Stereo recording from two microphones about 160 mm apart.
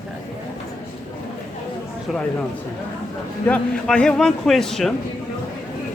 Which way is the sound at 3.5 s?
5° left (ahead or behind).